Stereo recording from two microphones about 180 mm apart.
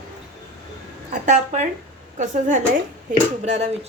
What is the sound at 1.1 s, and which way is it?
A woman's voice, 45° right (ahead or behind).